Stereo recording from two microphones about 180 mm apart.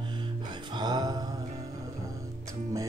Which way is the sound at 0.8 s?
25° right (ahead or behind).